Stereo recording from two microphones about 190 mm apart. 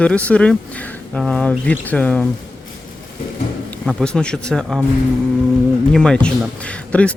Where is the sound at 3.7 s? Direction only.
5° left (ahead or behind).